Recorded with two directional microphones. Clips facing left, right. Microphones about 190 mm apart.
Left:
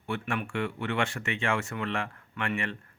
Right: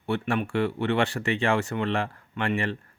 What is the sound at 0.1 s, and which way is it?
Speech, 35° right (ahead or behind).